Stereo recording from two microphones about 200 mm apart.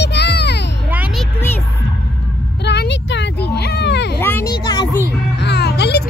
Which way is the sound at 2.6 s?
60° left (ahead or behind).